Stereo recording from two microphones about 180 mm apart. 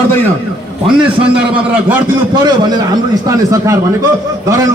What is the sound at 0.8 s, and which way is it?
A man's voice, 5° right (ahead or behind).